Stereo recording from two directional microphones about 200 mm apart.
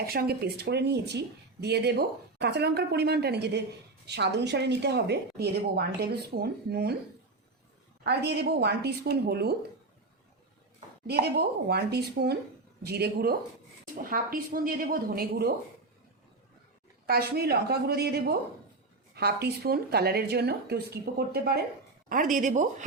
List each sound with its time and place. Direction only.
0.1 s a woman's voice: 50° right (ahead or behind)
8.0 s a woman's voice: 55° right (ahead or behind)
11.0 s speech: 55° right (ahead or behind)
17.1 s speech: 50° right (ahead or behind)
22.1 s speech: 40° right (ahead or behind)